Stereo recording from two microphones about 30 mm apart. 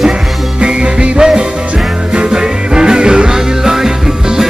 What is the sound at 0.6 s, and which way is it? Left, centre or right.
Music, right.